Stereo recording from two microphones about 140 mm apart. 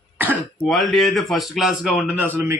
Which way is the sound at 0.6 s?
Centre (ahead or behind).